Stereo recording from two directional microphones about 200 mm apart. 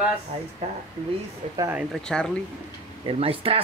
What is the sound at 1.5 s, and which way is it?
Speech, 15° right (ahead or behind).